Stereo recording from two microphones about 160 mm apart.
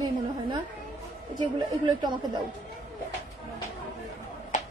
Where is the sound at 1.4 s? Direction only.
30° right (ahead or behind).